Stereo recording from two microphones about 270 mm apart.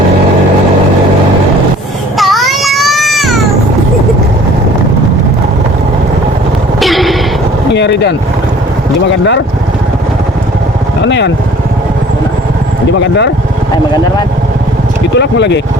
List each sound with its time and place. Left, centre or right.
2.1 s a sound: centre
6.7 s a sound: centre
7.7 s speech: left
11.0 s speech: left
13.0 s speech: left
15.1 s speech: left